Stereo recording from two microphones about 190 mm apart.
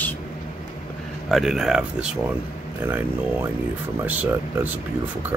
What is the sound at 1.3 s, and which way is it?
Speech, centre (ahead or behind).